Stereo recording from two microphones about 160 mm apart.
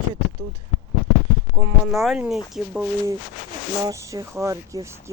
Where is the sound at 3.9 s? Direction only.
20° right (ahead or behind).